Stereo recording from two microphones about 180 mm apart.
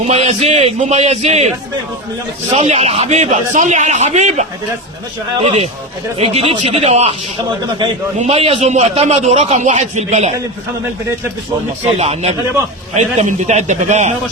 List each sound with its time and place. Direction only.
0.1 s a man's voice: 35° right (ahead or behind)
8.2 s a man's voice: 35° right (ahead or behind)
11.9 s a man's voice: 35° right (ahead or behind)